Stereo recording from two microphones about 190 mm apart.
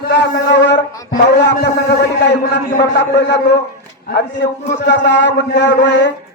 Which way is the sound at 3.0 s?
65° left (ahead or behind).